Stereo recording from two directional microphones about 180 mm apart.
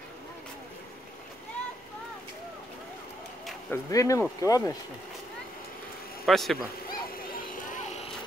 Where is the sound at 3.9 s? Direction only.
20° left (ahead or behind).